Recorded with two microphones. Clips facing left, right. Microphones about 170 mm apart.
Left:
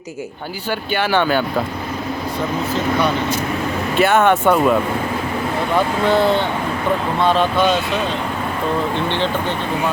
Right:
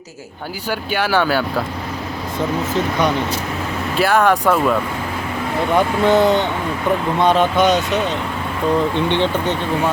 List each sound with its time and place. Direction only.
0.7 s speech: 10° right (ahead or behind)
3.9 s speech: centre (ahead or behind)
5.7 s speech: 20° right (ahead or behind)
9.0 s speech: 15° right (ahead or behind)